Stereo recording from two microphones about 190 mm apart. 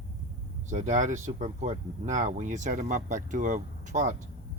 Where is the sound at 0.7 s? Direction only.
40° right (ahead or behind).